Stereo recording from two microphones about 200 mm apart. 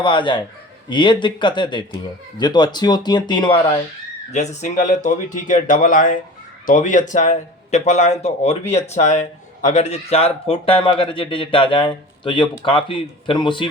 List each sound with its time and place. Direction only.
0.0 s speech: 25° left (ahead or behind)
4.3 s speech: 35° left (ahead or behind)